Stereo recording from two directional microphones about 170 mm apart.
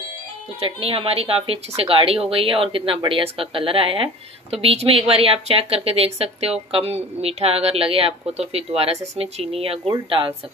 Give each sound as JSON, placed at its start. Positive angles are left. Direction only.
{"t": 0.7, "sound": "speech", "side_deg": -35}